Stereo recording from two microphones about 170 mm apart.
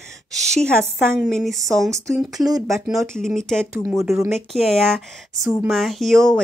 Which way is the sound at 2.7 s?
Centre (ahead or behind).